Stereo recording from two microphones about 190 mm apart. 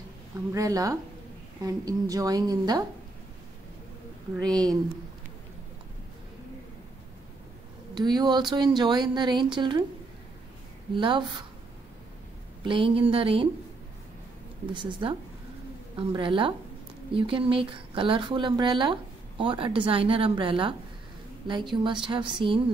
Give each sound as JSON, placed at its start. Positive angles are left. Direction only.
{"t": 0.5, "sound": "a woman's voice", "side_deg": -20}
{"t": 4.4, "sound": "speech", "side_deg": 5}
{"t": 7.9, "sound": "speech", "side_deg": -20}
{"t": 11.0, "sound": "speech", "side_deg": -25}
{"t": 12.6, "sound": "speech", "side_deg": -25}
{"t": 14.7, "sound": "a woman's voice", "side_deg": -25}